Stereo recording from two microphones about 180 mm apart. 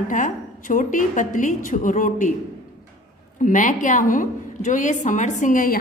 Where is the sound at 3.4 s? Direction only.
45° left (ahead or behind).